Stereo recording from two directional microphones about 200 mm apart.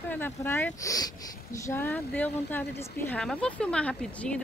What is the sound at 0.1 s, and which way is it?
Speech, 10° left (ahead or behind).